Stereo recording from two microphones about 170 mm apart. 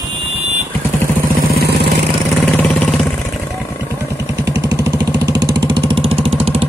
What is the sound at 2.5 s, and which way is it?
Vehicle, 5° left (ahead or behind).